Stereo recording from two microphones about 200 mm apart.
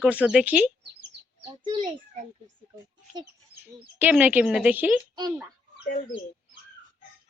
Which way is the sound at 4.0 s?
10° right (ahead or behind).